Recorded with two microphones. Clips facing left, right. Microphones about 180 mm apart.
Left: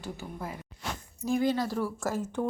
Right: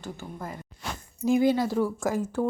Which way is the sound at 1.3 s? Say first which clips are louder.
Right 5 dB; 5° right (ahead or behind).